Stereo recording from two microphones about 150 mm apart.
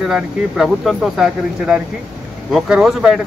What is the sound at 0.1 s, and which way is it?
Speech, centre (ahead or behind).